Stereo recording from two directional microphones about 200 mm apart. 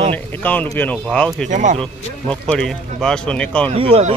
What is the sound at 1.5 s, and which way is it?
Speech, 40° right (ahead or behind).